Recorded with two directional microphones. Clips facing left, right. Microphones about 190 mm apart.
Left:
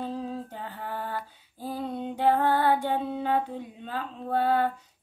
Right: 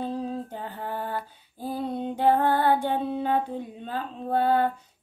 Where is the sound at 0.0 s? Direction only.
25° right (ahead or behind).